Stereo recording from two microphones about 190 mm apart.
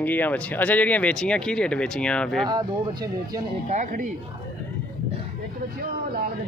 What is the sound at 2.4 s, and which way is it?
Speech, 20° right (ahead or behind).